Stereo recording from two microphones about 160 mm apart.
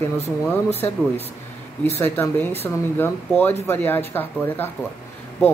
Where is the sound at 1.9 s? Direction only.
15° left (ahead or behind).